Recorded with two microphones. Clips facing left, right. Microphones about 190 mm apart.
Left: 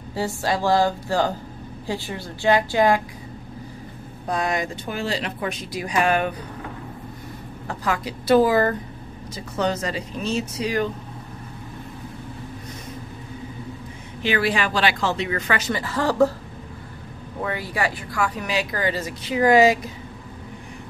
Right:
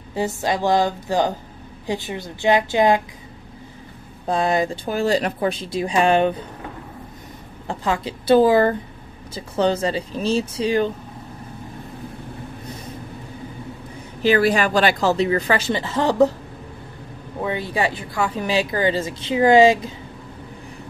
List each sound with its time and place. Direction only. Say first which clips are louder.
0.1 s speech: right 2 dB; 20° right (ahead or behind)
4.3 s a woman's voice: right 5 dB; 30° right (ahead or behind)
5.5 s speech: right 4 dB; 30° right (ahead or behind)
7.6 s speech: right 3 dB; 25° right (ahead or behind)
14.2 s a woman's voice: right 5 dB; 40° right (ahead or behind); by 16.3 s 20° right (ahead or behind)
17.4 s speech: right 3 dB; 20° right (ahead or behind)